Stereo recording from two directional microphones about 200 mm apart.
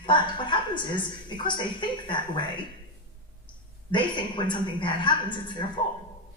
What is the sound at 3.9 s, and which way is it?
A woman's voice, 25° left (ahead or behind).